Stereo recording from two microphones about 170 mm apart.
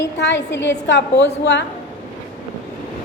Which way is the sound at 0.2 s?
90° left.